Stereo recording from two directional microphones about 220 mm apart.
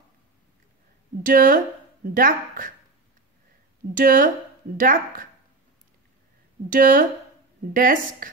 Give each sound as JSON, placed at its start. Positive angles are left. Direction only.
{"t": 1.2, "sound": "speech", "side_deg": -40}
{"t": 3.9, "sound": "speech", "side_deg": -40}
{"t": 6.7, "sound": "speech", "side_deg": -40}